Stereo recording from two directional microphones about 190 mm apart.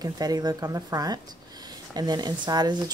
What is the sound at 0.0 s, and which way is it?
A woman's voice, 20° right (ahead or behind).